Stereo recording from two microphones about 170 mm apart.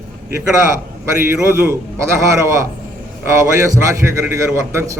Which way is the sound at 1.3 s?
15° right (ahead or behind).